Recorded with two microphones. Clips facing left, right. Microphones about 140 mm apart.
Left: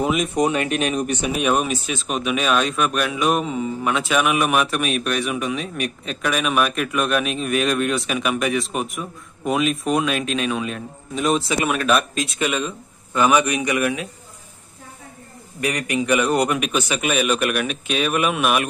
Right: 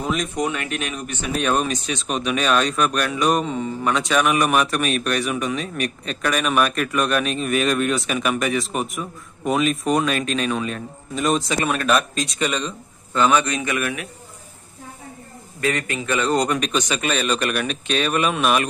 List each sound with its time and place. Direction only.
0.0 s speech: 5° left (ahead or behind)
0.4 s speech: 25° left (ahead or behind)
1.3 s speech: 10° left (ahead or behind)
15.6 s a man's voice: 15° left (ahead or behind)